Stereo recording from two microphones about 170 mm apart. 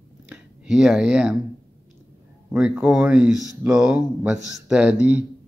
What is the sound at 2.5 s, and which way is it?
Speech, 5° right (ahead or behind).